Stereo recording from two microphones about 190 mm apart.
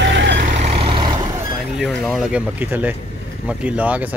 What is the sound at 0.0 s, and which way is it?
Vehicle, 70° right (ahead or behind).